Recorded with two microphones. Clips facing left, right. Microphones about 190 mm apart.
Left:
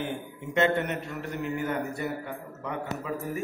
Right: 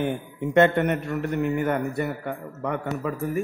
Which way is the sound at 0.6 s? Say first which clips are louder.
Right 6 dB; 55° right (ahead or behind).